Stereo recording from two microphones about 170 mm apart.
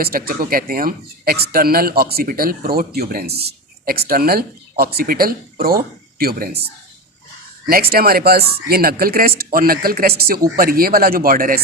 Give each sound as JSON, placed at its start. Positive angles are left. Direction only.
{"t": 0.0, "sound": "speech", "side_deg": -60}
{"t": 7.7, "sound": "speech", "side_deg": -60}